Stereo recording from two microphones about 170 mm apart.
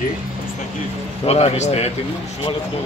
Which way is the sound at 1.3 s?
40° left (ahead or behind).